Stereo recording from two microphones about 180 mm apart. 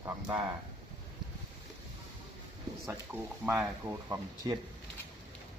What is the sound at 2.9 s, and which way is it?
Speech, 10° right (ahead or behind).